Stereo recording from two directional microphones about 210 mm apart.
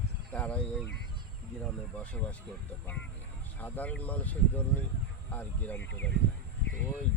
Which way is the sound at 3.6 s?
5° left (ahead or behind).